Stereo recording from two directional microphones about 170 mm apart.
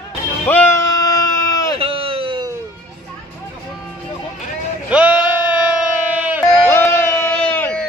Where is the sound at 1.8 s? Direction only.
35° right (ahead or behind).